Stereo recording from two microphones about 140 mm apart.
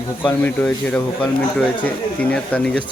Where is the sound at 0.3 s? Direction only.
10° left (ahead or behind).